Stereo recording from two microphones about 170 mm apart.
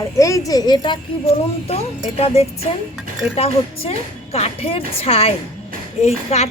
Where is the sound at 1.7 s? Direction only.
35° left (ahead or behind).